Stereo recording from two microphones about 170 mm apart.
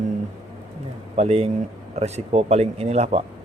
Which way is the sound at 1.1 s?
35° right (ahead or behind).